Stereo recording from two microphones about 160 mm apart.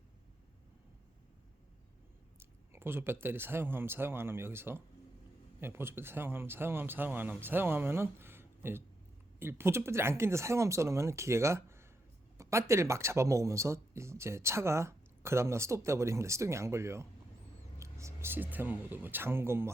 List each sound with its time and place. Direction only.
2.4 s speech: 15° right (ahead or behind)